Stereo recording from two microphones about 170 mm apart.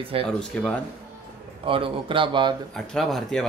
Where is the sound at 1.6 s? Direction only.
30° right (ahead or behind).